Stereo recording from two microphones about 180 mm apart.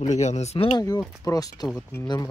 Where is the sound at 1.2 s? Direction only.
20° left (ahead or behind).